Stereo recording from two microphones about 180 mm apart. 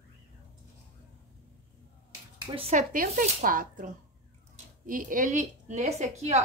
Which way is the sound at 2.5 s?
40° right (ahead or behind).